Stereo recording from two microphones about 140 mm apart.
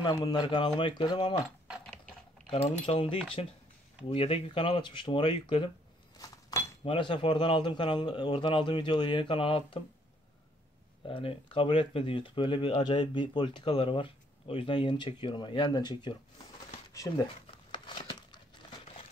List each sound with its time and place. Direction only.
0.0 s speech: 30° left (ahead or behind)
2.4 s speech: 40° left (ahead or behind)
6.1 s a sound: 25° left (ahead or behind)
6.8 s speech: 40° left (ahead or behind)
11.1 s speech: 40° left (ahead or behind)
17.6 s crumpling: 35° left (ahead or behind)